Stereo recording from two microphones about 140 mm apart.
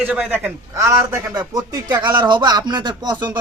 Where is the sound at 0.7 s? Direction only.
20° right (ahead or behind).